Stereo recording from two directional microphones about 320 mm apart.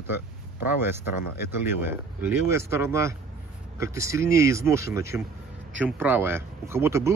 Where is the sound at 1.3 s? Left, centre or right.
Centre.